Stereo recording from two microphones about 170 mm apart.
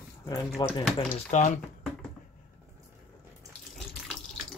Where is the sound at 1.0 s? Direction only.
40° left (ahead or behind).